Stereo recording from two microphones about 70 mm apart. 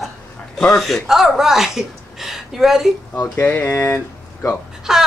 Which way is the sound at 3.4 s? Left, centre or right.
Left.